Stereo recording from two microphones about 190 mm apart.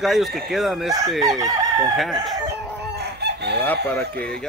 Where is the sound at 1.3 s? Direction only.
20° right (ahead or behind).